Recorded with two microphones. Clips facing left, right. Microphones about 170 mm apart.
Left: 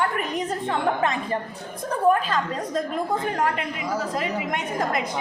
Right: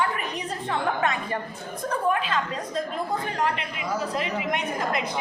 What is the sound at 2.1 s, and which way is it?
A woman's voice, 40° left (ahead or behind).